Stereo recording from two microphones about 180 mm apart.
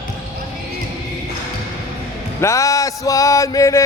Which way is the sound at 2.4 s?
15° left (ahead or behind).